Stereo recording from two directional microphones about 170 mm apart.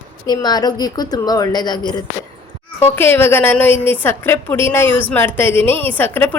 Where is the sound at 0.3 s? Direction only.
25° left (ahead or behind).